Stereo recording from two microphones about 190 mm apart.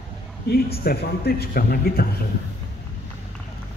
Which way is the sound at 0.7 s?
55° left (ahead or behind).